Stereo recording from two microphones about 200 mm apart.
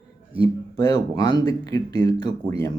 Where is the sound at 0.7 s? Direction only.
20° left (ahead or behind).